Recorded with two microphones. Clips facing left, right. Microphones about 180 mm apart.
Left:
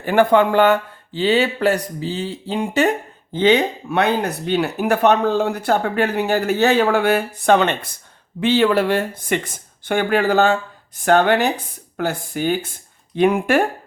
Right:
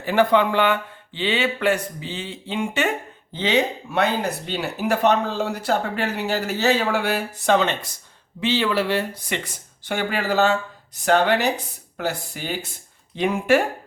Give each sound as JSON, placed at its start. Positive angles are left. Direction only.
{"t": 0.0, "sound": "speech", "side_deg": 50}
{"t": 3.3, "sound": "speech", "side_deg": 55}